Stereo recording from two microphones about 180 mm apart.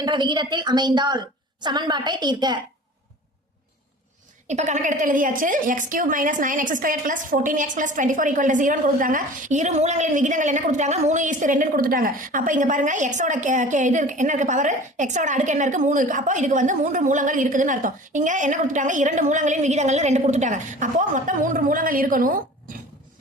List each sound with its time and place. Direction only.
0.0 s a woman's voice: 25° right (ahead or behind)
4.4 s a woman's voice: 40° right (ahead or behind)